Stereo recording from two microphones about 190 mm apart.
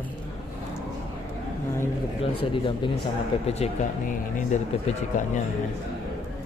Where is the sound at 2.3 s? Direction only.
25° left (ahead or behind).